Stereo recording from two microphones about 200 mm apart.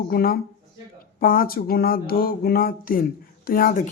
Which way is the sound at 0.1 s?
45° left (ahead or behind).